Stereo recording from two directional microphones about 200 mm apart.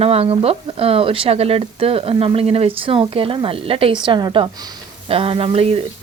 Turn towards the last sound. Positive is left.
turn(degrees=-30)  # may be behind; listen again after turning